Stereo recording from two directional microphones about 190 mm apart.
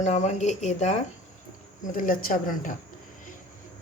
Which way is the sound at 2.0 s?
45° left (ahead or behind).